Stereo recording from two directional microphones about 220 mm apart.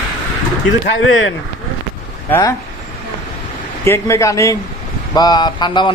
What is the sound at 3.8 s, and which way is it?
Speech, 15° left (ahead or behind).